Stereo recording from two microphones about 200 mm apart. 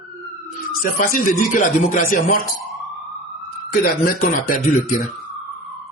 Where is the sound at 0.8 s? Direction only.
45° left (ahead or behind).